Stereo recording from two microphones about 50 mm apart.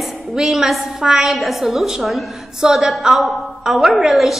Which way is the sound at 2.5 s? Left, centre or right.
Centre.